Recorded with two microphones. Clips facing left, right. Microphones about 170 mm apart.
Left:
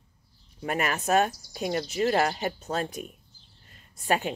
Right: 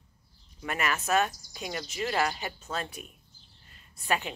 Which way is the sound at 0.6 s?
45° left (ahead or behind).